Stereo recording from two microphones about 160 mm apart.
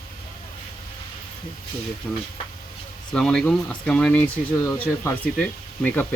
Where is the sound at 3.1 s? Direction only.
5° left (ahead or behind).